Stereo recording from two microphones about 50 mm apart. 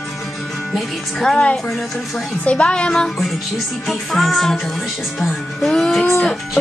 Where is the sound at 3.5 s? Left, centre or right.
Centre.